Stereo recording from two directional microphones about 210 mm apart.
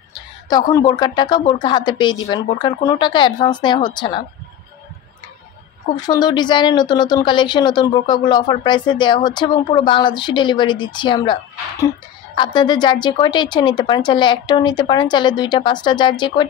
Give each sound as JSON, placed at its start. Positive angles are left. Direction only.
{"t": 0.5, "sound": "speech", "side_deg": 20}
{"t": 5.9, "sound": "speech", "side_deg": 20}
{"t": 12.4, "sound": "speech", "side_deg": 20}